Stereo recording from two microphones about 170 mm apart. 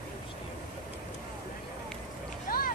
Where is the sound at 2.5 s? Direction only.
60° left (ahead or behind).